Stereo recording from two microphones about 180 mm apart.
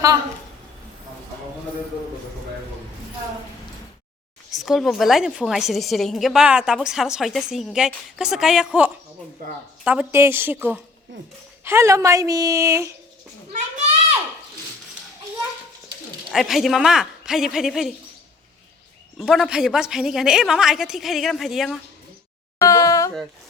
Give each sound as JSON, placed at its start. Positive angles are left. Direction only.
{"t": 4.5, "sound": "a woman's voice", "side_deg": 0}
{"t": 16.3, "sound": "a woman's voice", "side_deg": 0}
{"t": 19.2, "sound": "a woman's voice", "side_deg": 0}
{"t": 22.6, "sound": "a sound", "side_deg": 20}